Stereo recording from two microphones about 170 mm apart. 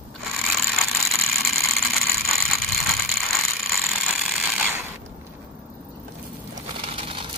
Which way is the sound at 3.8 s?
Centre (ahead or behind).